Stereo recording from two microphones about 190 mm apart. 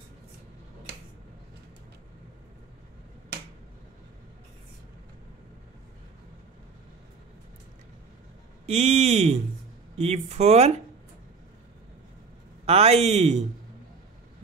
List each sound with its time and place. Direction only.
8.6 s speech: 35° right (ahead or behind)
12.6 s speech: 35° right (ahead or behind)